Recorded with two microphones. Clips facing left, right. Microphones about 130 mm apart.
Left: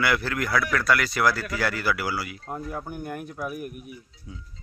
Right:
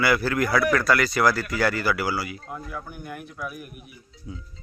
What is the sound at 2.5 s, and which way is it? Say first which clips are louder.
Speech: left 3 dB; 45° left (ahead or behind).